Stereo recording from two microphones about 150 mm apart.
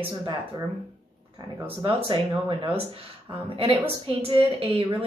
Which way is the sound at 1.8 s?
35° right (ahead or behind).